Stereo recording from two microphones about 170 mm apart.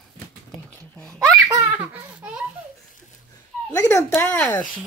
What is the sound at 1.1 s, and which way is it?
Laughter, 20° right (ahead or behind).